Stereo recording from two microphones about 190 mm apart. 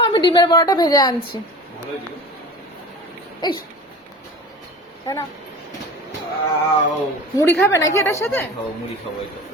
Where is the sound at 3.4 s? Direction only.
20° left (ahead or behind).